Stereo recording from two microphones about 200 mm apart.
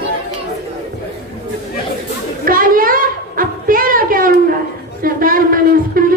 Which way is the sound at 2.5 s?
45° right (ahead or behind).